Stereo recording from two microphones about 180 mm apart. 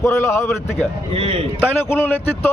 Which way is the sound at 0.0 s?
15° left (ahead or behind).